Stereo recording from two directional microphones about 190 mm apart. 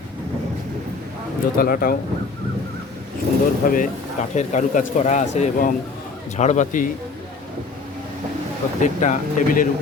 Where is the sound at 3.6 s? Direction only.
45° left (ahead or behind).